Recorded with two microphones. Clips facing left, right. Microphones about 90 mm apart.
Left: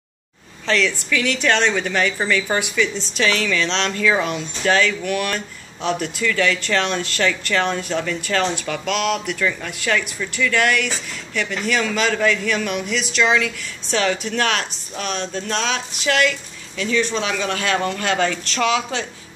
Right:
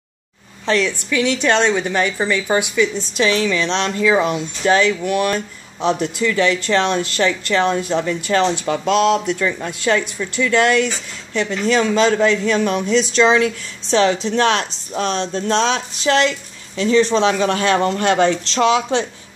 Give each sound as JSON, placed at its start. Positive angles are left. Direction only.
{"t": 0.7, "sound": "speech", "side_deg": -20}